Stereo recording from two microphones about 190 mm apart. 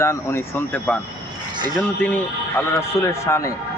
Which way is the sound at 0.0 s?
15° left (ahead or behind).